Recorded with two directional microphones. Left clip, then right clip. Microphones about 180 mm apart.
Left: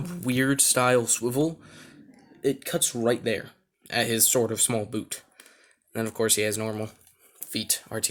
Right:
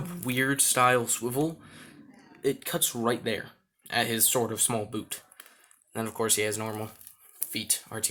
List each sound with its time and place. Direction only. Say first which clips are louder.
0.0 s speech: left 2 dB; 50° left (ahead or behind)